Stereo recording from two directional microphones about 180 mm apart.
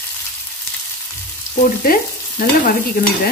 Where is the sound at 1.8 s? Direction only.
55° left (ahead or behind).